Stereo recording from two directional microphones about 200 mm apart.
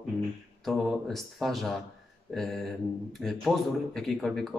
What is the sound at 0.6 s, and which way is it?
Speech, centre (ahead or behind).